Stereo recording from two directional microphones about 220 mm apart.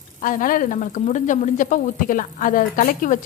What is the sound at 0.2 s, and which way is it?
Speech, 40° left (ahead or behind).